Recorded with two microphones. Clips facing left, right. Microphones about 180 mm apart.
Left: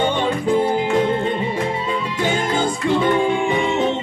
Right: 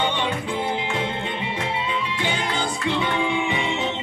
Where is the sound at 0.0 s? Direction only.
45° left (ahead or behind).